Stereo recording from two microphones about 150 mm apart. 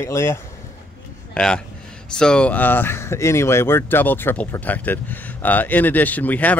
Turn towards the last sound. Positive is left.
turn(degrees=10)  # may be behind; listen again after turning